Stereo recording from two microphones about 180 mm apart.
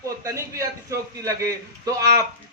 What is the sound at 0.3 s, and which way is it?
A man's voice, 15° right (ahead or behind).